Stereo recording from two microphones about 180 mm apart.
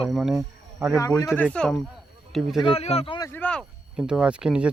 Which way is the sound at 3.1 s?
20° left (ahead or behind).